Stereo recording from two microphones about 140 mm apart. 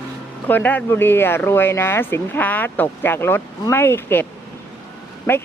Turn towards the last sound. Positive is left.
turn(degrees=15)  # may be behind; listen again after turning